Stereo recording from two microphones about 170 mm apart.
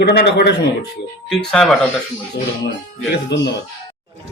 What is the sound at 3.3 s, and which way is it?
Speech, 90° left.